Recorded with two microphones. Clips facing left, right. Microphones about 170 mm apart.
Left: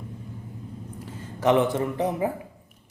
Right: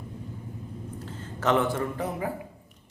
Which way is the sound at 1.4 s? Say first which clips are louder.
Left 4 dB; 15° left (ahead or behind).